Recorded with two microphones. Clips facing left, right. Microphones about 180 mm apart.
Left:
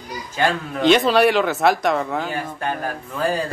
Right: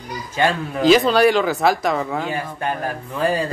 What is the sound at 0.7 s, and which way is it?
Speech, centre (ahead or behind).